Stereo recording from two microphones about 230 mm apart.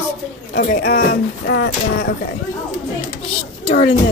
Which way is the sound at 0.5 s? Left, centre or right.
Left.